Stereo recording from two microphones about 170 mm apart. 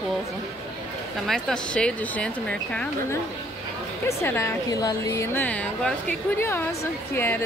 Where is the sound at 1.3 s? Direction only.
5° left (ahead or behind).